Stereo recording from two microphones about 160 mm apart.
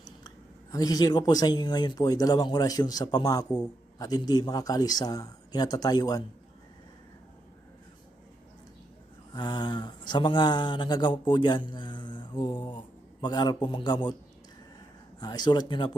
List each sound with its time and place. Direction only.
0.3 s speech: 25° left (ahead or behind)
9.3 s speech: 30° left (ahead or behind)
15.2 s speech: 25° left (ahead or behind)